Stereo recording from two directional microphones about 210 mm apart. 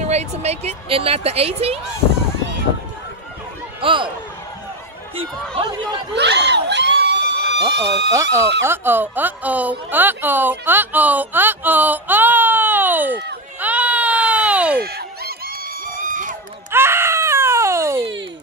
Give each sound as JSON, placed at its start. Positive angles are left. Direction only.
{"t": 0.0, "sound": "speech", "side_deg": -30}
{"t": 3.8, "sound": "speech", "side_deg": -25}
{"t": 5.6, "sound": "speech", "side_deg": -20}
{"t": 6.1, "sound": "a sound", "side_deg": -55}
{"t": 8.1, "sound": "speech", "side_deg": -15}
{"t": 13.6, "sound": "baby cry", "side_deg": -5}
{"t": 14.8, "sound": "a sound", "side_deg": -50}
{"t": 16.7, "sound": "screaming", "side_deg": -10}